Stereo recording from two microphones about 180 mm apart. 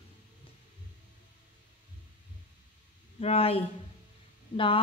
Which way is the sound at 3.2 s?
35° left (ahead or behind).